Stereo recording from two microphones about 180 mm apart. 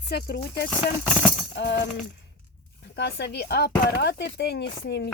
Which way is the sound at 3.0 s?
70° left (ahead or behind).